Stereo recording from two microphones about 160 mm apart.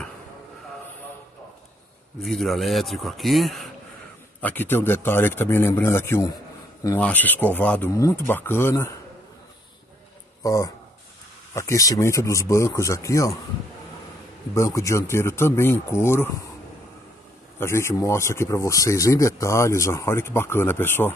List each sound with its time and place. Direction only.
2.1 s speech: centre (ahead or behind)
4.4 s speech: 10° left (ahead or behind)
10.4 s speech: 20° left (ahead or behind)
14.5 s speech: 20° left (ahead or behind)
17.6 s speech: 15° left (ahead or behind)